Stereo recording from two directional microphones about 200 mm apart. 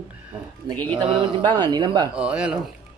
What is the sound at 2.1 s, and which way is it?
Speech, 5° right (ahead or behind).